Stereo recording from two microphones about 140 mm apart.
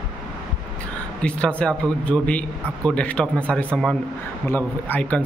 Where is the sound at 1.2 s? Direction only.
10° left (ahead or behind).